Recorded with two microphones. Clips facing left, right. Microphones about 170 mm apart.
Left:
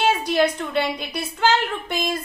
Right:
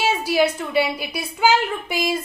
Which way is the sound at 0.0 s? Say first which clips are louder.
Even; 10° right (ahead or behind).